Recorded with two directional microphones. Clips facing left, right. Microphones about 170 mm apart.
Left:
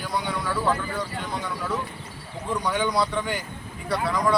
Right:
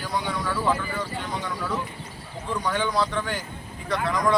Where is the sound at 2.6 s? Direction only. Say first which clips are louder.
Even; 10° left (ahead or behind).